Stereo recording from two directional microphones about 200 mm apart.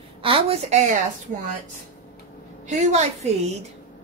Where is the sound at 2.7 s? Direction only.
35° right (ahead or behind).